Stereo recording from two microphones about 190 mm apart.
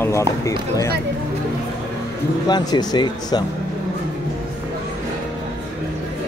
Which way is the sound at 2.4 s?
20° left (ahead or behind).